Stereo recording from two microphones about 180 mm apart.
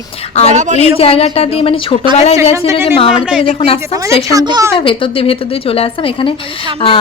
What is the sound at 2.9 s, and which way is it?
Speech, 35° left (ahead or behind).